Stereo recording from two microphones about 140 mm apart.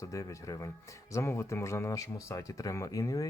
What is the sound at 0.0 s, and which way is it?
Speech, 25° left (ahead or behind).